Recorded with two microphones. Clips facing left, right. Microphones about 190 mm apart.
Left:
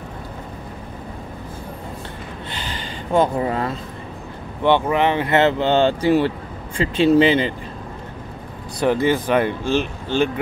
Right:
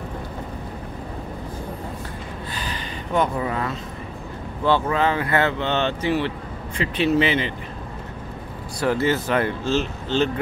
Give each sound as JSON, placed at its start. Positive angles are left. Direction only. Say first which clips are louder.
{"t": 2.5, "sound": "a sound", "louder": "left 1 dB", "side_deg": 25}
{"t": 4.6, "sound": "speech", "louder": "left 3 dB", "side_deg": 20}
{"t": 8.7, "sound": "speech", "louder": "left 3 dB", "side_deg": 15}